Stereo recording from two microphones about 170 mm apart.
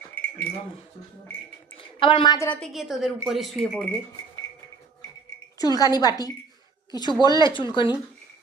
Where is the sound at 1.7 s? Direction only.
30° left (ahead or behind).